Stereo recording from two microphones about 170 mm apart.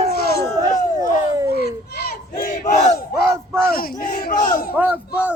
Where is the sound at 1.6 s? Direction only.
65° left (ahead or behind); by 2.9 s 45° left (ahead or behind).